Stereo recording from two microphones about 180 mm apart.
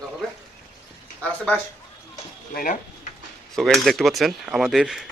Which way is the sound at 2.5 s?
50° left (ahead or behind).